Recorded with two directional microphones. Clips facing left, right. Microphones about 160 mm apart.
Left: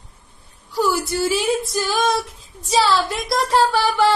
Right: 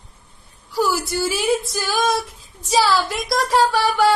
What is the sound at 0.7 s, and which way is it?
Speech, centre (ahead or behind).